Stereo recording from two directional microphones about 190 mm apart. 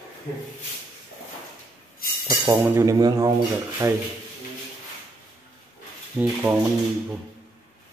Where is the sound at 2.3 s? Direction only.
15° right (ahead or behind).